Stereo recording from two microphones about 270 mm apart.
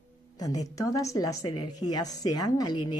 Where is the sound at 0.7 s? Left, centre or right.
Centre.